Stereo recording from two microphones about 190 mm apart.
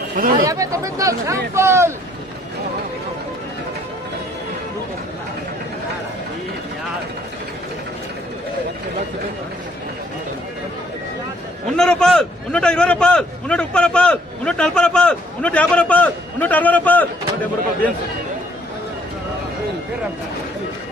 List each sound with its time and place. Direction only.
0.1 s speech: 50° right (ahead or behind)
0.5 s speech: 15° right (ahead or behind)
11.7 s a man's voice: 5° left (ahead or behind)